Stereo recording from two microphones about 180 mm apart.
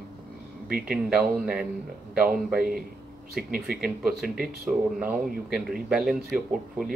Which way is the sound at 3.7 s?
5° right (ahead or behind).